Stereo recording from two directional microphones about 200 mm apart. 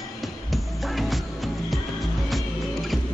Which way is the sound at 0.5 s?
Centre (ahead or behind).